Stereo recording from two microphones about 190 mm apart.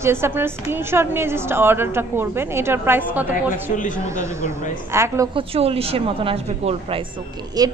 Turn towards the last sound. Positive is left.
turn(degrees=-20)  # may be behind; listen again after turning